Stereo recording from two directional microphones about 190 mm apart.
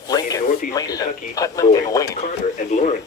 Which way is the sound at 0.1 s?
20° left (ahead or behind).